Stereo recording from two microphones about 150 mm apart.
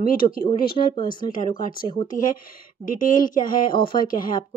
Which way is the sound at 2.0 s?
65° left (ahead or behind).